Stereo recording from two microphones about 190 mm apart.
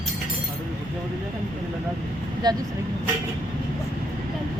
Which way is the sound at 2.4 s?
20° right (ahead or behind).